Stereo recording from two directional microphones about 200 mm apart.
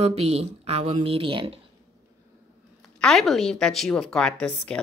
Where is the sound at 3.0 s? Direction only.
Centre (ahead or behind).